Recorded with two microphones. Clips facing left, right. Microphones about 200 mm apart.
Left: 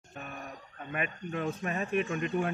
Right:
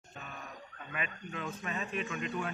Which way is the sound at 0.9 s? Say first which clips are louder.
Left 6 dB; 50° left (ahead or behind).